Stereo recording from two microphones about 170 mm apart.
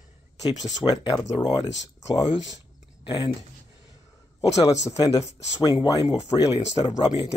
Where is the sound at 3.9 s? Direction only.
20° left (ahead or behind).